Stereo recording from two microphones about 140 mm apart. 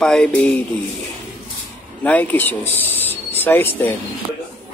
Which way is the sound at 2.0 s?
10° left (ahead or behind).